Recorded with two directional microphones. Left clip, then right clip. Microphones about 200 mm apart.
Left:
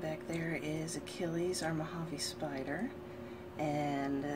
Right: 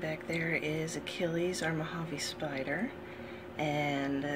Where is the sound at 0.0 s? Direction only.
5° right (ahead or behind).